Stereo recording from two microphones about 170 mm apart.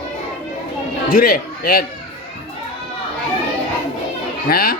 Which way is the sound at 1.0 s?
60° left (ahead or behind).